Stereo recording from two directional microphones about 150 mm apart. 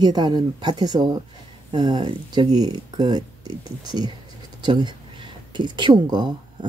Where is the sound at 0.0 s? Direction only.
30° right (ahead or behind).